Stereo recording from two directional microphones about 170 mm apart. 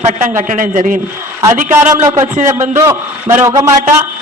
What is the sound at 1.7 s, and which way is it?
A man's voice, 15° right (ahead or behind).